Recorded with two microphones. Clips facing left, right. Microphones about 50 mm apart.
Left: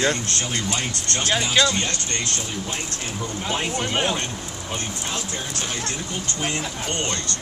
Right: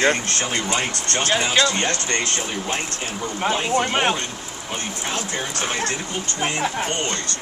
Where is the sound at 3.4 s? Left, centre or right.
Right.